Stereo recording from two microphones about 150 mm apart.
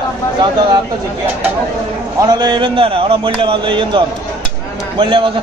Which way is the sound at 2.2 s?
30° right (ahead or behind).